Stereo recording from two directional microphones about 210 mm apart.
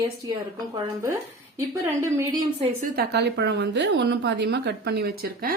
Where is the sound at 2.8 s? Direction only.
50° right (ahead or behind).